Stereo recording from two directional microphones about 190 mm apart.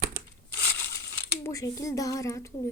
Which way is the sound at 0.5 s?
15° left (ahead or behind).